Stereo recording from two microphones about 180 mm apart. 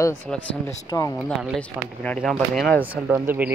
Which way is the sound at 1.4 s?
5° left (ahead or behind).